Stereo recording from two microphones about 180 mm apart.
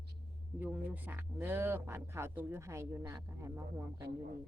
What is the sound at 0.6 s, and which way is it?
Speech, 10° right (ahead or behind).